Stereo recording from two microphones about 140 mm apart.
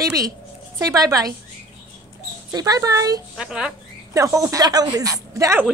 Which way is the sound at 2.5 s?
25° right (ahead or behind).